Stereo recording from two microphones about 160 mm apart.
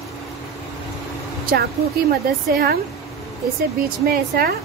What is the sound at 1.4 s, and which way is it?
A woman's voice, 70° right (ahead or behind).